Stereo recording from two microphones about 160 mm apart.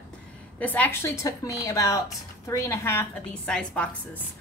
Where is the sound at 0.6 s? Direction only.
10° left (ahead or behind).